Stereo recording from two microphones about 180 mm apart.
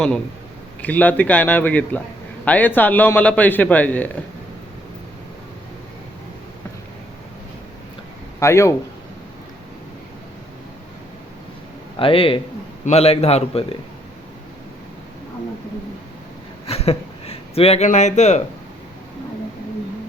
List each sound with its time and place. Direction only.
0.8 s a man's voice: 10° left (ahead or behind)
8.4 s a man's voice: 15° left (ahead or behind)
11.9 s a man's voice: 30° left (ahead or behind)
16.6 s a sound: 35° left (ahead or behind)